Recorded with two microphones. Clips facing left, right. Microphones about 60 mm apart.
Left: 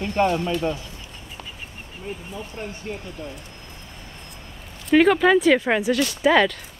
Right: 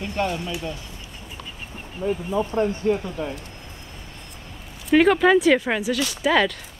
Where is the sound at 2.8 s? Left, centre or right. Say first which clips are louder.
Right 11 dB; right.